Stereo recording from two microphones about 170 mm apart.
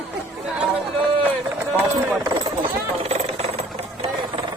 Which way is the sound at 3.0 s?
35° right (ahead or behind).